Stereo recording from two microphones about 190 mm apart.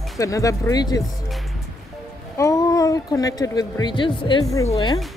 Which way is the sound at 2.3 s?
15° left (ahead or behind).